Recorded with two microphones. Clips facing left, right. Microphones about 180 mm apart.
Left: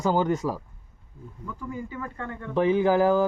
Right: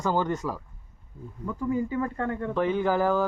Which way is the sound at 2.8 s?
10° left (ahead or behind).